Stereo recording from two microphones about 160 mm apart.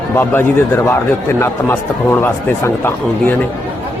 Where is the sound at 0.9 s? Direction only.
15° left (ahead or behind).